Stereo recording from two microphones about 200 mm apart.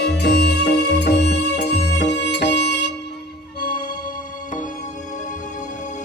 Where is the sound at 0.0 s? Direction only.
55° left (ahead or behind).